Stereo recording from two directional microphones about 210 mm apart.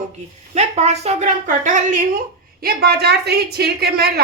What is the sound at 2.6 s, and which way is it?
A woman's voice, 50° right (ahead or behind).